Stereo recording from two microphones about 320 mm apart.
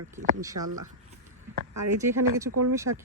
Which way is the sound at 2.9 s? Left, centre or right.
Right.